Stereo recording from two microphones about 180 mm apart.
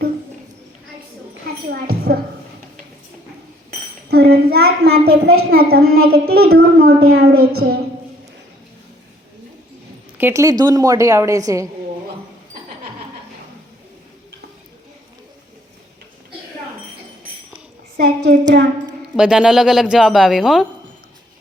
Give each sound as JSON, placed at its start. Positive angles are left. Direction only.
{"t": 3.7, "sound": "a child's voice", "side_deg": -60}
{"t": 10.2, "sound": "a woman's voice", "side_deg": -15}
{"t": 17.9, "sound": "a sound", "side_deg": -65}
{"t": 19.1, "sound": "a woman's voice", "side_deg": -5}